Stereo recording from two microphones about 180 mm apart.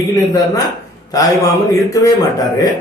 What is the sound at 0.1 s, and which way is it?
Speech, 20° left (ahead or behind).